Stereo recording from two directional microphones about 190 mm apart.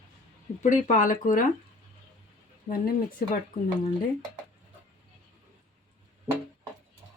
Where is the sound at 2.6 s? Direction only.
50° left (ahead or behind).